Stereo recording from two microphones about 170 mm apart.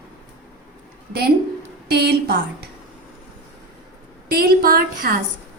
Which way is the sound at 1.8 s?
75° right (ahead or behind).